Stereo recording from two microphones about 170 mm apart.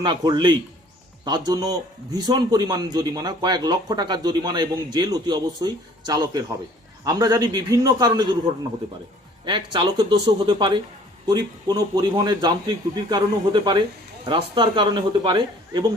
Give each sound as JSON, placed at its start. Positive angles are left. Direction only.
{"t": 0.0, "sound": "a man's voice", "side_deg": -25}
{"t": 9.4, "sound": "a man's voice", "side_deg": -30}